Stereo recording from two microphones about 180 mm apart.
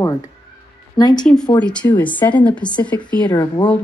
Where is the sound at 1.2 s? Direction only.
5° left (ahead or behind).